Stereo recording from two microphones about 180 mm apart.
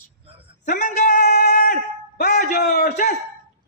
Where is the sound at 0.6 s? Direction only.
45° left (ahead or behind).